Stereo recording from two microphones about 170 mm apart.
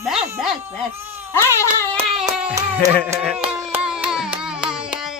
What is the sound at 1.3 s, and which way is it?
Baby cry, 15° left (ahead or behind).